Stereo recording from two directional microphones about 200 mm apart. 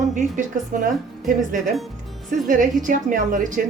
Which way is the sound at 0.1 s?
40° right (ahead or behind).